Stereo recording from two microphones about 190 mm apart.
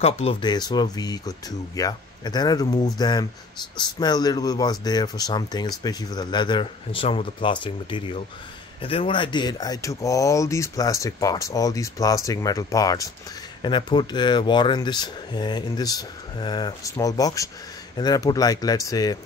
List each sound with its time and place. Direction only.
0.0 s speech: 30° left (ahead or behind)